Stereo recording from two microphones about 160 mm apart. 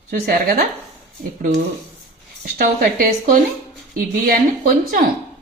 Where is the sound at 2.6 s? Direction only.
65° right (ahead or behind).